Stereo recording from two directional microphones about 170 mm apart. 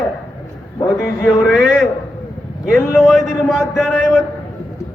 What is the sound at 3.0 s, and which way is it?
A man's voice, centre (ahead or behind).